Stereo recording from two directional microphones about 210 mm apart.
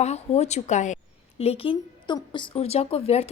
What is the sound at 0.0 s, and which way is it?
A woman's voice, 30° left (ahead or behind).